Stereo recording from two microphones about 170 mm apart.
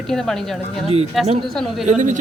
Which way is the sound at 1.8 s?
45° right (ahead or behind).